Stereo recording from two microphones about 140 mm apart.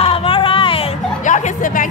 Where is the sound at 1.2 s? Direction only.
65° left (ahead or behind).